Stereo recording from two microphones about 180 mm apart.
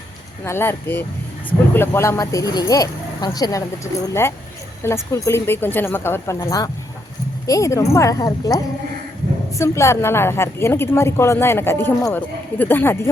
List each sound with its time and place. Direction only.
0.4 s a woman's voice: 15° left (ahead or behind)